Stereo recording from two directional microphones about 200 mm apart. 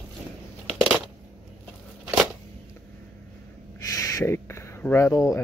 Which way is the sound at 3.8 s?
15° left (ahead or behind).